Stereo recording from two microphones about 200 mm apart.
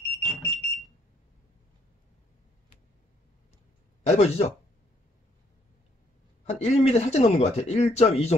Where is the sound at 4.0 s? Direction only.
35° left (ahead or behind).